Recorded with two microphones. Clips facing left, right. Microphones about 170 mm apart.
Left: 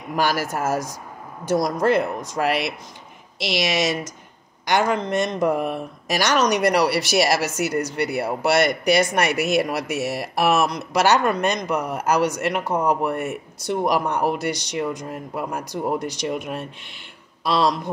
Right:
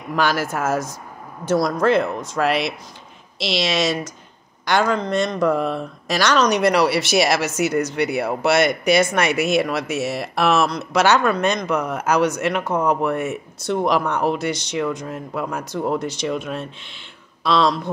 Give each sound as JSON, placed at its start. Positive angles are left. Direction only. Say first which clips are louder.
{"t": 0.1, "sound": "speech", "louder": "right 1 dB", "side_deg": 15}